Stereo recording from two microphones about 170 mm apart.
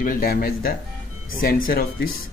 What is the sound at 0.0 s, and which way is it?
Speech, 55° left (ahead or behind).